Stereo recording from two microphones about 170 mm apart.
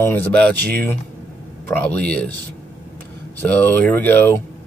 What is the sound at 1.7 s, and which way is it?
Speech, 10° left (ahead or behind).